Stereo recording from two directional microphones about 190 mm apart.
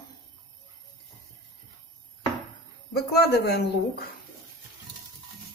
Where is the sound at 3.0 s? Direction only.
60° left (ahead or behind).